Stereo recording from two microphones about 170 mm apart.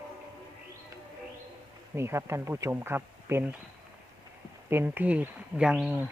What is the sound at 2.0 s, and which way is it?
Speech, 15° right (ahead or behind).